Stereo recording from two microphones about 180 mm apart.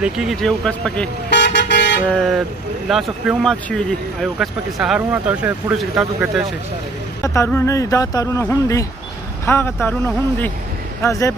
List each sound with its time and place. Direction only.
0.0 s speech: centre (ahead or behind)
1.3 s vehicle: 75° left (ahead or behind)
2.0 s speech: centre (ahead or behind)
7.2 s speech: 15° left (ahead or behind)